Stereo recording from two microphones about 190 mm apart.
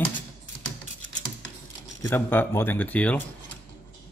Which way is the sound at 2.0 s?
10° left (ahead or behind).